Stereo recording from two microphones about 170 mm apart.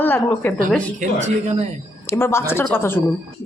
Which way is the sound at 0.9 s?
40° right (ahead or behind).